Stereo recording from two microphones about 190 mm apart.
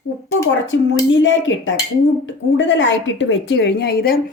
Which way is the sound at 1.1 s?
75° left (ahead or behind).